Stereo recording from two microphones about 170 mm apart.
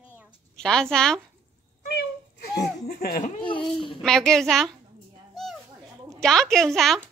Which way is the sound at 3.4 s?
30° left (ahead or behind).